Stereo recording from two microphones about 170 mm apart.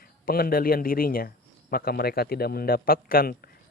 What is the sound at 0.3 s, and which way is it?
Speech, 60° left (ahead or behind).